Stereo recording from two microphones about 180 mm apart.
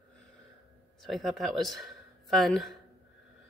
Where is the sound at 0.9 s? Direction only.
Centre (ahead or behind).